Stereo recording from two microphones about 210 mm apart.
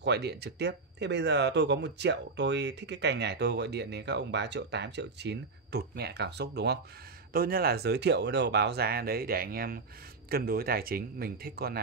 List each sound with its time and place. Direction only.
0.0 s speech: 50° right (ahead or behind)